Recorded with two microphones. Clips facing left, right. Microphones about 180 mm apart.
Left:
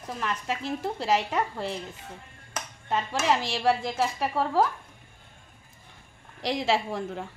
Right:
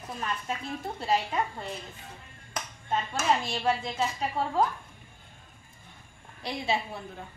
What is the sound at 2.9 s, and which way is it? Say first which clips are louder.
A woman's voice: left 2 dB; 90° left.